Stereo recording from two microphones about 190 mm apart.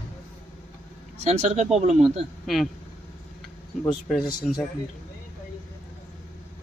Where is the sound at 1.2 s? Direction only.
35° right (ahead or behind).